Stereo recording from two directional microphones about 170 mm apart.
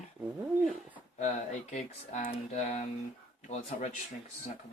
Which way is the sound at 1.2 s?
45° left (ahead or behind).